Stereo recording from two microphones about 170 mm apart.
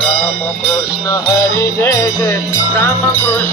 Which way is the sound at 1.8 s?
20° left (ahead or behind).